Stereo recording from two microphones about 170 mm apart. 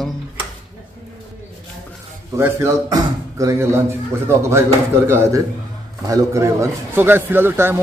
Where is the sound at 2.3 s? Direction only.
15° right (ahead or behind).